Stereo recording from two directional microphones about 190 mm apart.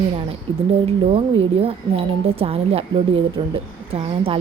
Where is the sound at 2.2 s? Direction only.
30° right (ahead or behind).